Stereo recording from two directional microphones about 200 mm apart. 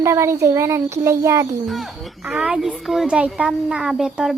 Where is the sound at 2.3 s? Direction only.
5° right (ahead or behind).